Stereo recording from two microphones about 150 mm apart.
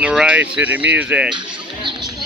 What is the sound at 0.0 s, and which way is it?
Speech, 5° right (ahead or behind).